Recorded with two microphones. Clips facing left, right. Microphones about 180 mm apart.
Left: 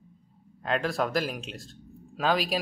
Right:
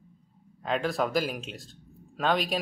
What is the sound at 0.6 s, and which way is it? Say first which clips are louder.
Speech: even; centre (ahead or behind).